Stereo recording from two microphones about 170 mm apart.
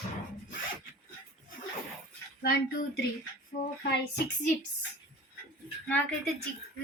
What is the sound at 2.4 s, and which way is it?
Speech, 85° left.